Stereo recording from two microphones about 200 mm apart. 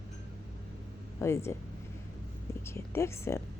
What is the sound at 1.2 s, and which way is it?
Speech, 15° left (ahead or behind).